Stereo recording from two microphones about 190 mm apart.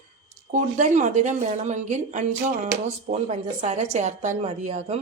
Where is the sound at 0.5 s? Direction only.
40° right (ahead or behind).